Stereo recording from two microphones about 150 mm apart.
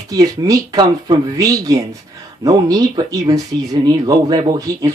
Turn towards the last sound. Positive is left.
turn(degrees=-25)  # may be behind; listen again after turning